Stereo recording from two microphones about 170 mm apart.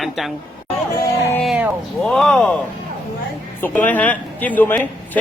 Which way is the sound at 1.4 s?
5° right (ahead or behind).